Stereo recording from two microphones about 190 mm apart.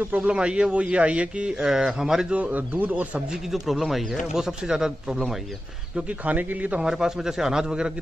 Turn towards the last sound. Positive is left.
turn(degrees=-5)  # may be behind; listen again after turning